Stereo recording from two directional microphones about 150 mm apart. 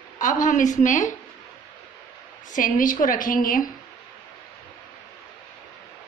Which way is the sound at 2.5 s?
65° left (ahead or behind).